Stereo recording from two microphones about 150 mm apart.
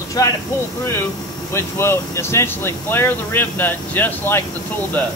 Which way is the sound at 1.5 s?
15° left (ahead or behind).